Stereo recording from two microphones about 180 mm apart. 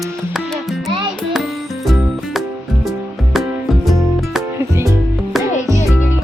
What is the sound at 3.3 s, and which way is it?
Music, centre (ahead or behind).